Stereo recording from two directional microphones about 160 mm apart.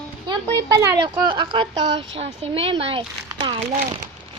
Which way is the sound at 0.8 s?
25° right (ahead or behind).